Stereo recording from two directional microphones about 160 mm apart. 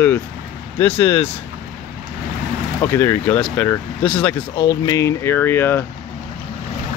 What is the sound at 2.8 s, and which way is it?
Speech, 15° left (ahead or behind).